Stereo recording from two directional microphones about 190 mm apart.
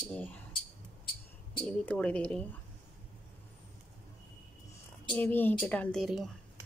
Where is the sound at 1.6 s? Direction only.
5° left (ahead or behind).